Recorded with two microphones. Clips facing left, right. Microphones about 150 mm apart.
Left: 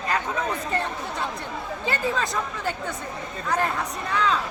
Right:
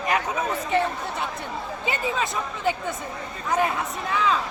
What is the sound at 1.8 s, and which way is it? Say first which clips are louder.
Speech: left 1 dB; 15° right (ahead or behind).